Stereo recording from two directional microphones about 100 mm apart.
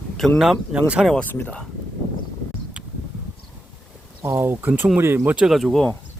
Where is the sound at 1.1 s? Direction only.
20° left (ahead or behind).